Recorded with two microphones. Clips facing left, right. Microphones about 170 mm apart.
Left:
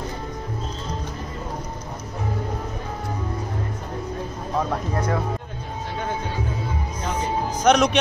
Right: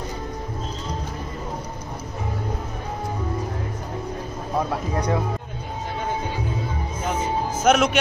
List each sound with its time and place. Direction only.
4.6 s speech: 10° right (ahead or behind)
7.6 s a man's voice: 5° right (ahead or behind)